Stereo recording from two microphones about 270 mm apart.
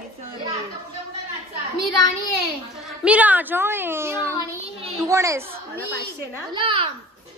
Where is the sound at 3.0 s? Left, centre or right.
Centre.